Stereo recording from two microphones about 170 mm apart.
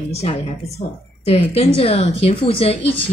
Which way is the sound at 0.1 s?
40° left (ahead or behind).